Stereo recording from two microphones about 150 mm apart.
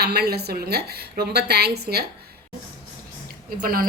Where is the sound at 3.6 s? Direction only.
75° right (ahead or behind).